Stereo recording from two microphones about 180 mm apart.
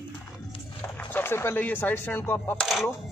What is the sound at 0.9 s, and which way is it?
Speech, 10° left (ahead or behind).